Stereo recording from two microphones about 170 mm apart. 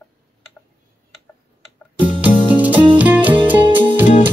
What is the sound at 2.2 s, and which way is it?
Music, 10° right (ahead or behind).